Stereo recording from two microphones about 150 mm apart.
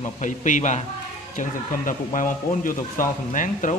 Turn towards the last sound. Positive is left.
turn(degrees=60)  # may be behind; listen again after turning